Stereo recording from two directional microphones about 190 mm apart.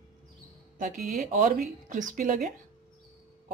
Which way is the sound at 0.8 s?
45° right (ahead or behind).